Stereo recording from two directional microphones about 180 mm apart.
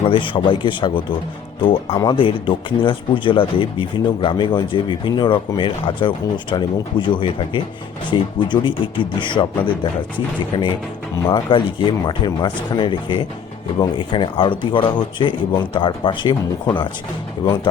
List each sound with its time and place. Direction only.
0.1 s a man's voice: 30° left (ahead or behind)